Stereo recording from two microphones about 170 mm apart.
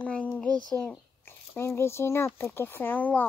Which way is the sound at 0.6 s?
5° left (ahead or behind).